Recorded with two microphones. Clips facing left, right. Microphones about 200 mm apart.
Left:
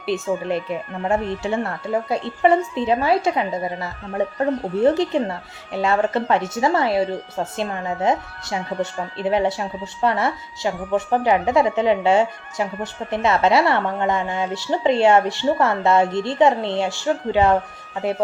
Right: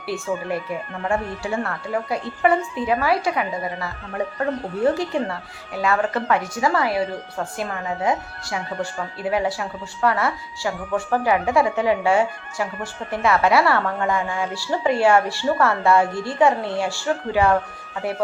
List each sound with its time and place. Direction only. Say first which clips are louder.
0.0 s speech: left 3 dB; 20° left (ahead or behind)